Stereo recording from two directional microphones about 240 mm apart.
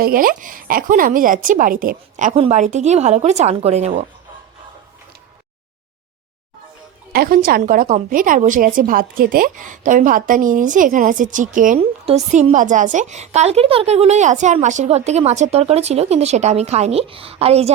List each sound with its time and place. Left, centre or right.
0.0 s speech: right
7.1 s a woman's voice: right